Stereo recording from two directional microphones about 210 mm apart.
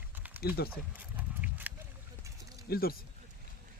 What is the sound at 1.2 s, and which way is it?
Horse, 5° right (ahead or behind).